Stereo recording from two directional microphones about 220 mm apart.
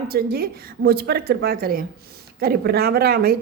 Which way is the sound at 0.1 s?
45° right (ahead or behind).